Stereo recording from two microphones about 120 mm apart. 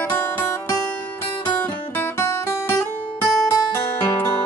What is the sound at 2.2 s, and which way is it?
Guitar, 25° left (ahead or behind).